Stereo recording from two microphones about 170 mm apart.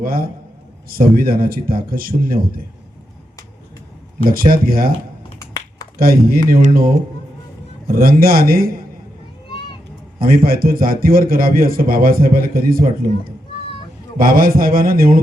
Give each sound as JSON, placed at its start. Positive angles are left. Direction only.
{"t": 0.0, "sound": "a man's voice", "side_deg": -60}
{"t": 4.2, "sound": "a man's voice", "side_deg": -55}
{"t": 5.4, "sound": "finger snapping", "side_deg": 20}
{"t": 6.0, "sound": "a man's voice", "side_deg": -60}
{"t": 10.2, "sound": "a man's voice", "side_deg": -60}
{"t": 14.2, "sound": "a man's voice", "side_deg": -55}